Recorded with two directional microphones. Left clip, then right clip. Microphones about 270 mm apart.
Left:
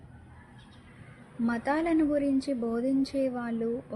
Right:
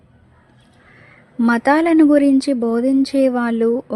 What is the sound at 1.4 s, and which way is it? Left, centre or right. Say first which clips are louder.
Speech: right 14 dB; right.